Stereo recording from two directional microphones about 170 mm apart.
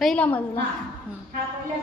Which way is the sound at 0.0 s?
5° left (ahead or behind).